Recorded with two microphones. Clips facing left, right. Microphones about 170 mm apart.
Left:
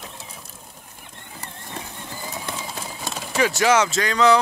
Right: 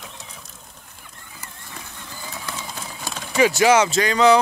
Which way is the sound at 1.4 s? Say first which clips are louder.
Left 5 dB; 30° left (ahead or behind).